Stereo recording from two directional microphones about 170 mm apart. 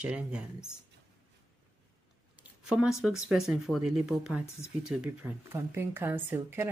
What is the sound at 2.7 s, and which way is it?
Speech, 5° right (ahead or behind).